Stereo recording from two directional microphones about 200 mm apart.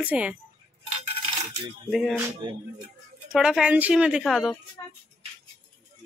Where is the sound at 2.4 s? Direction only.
20° right (ahead or behind).